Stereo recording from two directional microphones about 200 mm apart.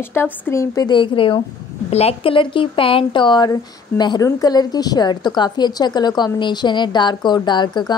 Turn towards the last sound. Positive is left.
turn(degrees=20)  # may be behind; listen again after turning